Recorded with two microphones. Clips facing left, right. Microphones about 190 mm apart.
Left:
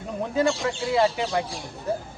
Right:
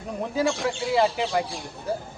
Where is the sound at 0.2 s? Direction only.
Centre (ahead or behind).